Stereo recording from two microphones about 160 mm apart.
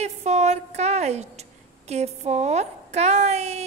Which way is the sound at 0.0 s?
45° right (ahead or behind).